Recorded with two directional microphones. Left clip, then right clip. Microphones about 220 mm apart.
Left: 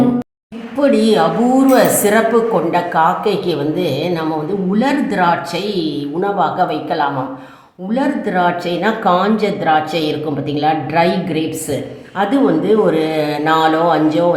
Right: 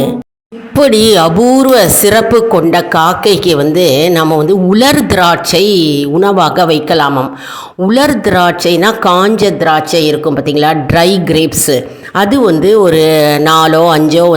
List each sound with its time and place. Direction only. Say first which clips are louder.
0.8 s a man's voice: right 6 dB; 45° right (ahead or behind)